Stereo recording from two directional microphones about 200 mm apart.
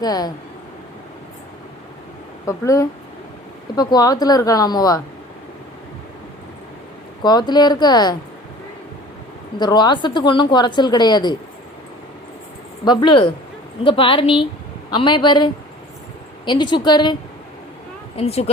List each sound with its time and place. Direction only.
0.0 s a woman's voice: 20° left (ahead or behind)
2.5 s a woman's voice: 15° left (ahead or behind)
7.2 s a woman's voice: 20° left (ahead or behind)
9.6 s a woman's voice: 20° left (ahead or behind)
12.8 s a woman's voice: 20° left (ahead or behind)
16.5 s a woman's voice: 25° left (ahead or behind)
18.2 s speech: 30° left (ahead or behind)